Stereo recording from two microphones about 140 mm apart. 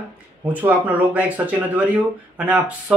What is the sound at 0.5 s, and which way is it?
Speech, 10° right (ahead or behind).